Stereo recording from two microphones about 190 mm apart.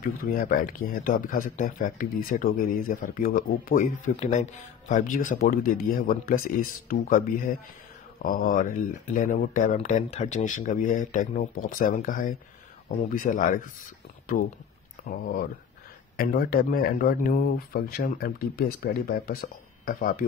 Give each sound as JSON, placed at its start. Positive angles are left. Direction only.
{"t": 0.2, "sound": "speech", "side_deg": 50}
{"t": 15.0, "sound": "speech", "side_deg": 50}